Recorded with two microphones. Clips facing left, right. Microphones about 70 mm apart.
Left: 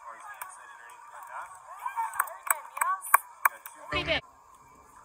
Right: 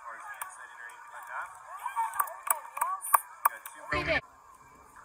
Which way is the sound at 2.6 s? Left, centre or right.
Left.